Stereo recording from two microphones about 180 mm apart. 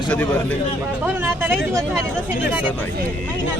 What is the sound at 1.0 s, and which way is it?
Speech, 10° right (ahead or behind).